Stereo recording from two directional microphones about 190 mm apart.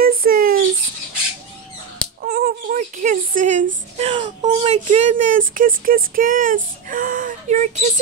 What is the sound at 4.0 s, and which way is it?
Speech, 30° right (ahead or behind).